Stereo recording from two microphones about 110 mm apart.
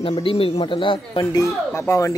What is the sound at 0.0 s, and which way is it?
Speech, 55° left (ahead or behind).